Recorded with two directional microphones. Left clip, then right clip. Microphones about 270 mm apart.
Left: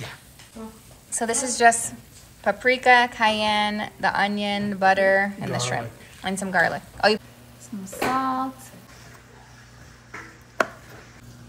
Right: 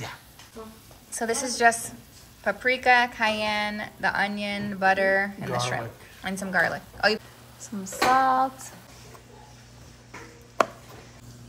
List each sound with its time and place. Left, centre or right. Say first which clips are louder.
1.1 s a woman's voice: left 2 dB; centre
8.2 s hands: right 4 dB; right
10.1 s chopping: even; centre